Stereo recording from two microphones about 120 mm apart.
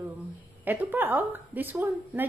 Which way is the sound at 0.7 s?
15° right (ahead or behind).